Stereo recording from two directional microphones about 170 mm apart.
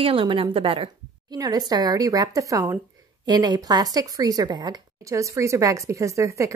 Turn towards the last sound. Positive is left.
turn(degrees=-20)  # may be behind; listen again after turning